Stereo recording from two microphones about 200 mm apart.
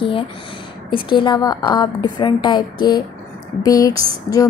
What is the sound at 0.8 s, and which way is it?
Speech, 25° left (ahead or behind).